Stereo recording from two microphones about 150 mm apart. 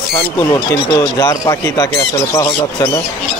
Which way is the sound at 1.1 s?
25° left (ahead or behind).